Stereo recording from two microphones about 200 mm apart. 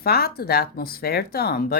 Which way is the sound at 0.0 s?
50° left (ahead or behind).